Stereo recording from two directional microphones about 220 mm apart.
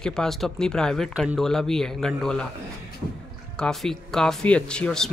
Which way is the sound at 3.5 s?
Centre (ahead or behind).